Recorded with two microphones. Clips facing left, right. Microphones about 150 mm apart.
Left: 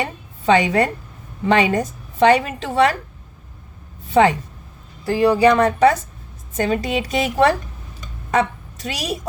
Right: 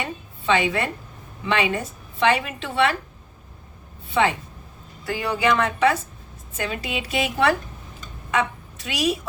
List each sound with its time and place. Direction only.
0.0 s a woman's voice: 40° left (ahead or behind)
4.1 s a woman's voice: 40° left (ahead or behind)